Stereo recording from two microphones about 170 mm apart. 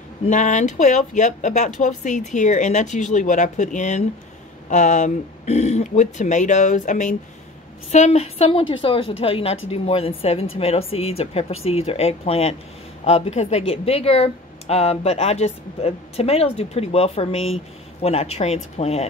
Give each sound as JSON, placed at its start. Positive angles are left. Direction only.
{"t": 0.3, "sound": "speech", "side_deg": 45}